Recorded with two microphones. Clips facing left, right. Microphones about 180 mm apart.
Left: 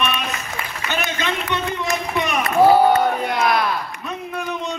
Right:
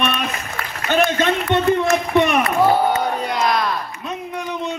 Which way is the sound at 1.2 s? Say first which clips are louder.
Right 7 dB; 50° right (ahead or behind).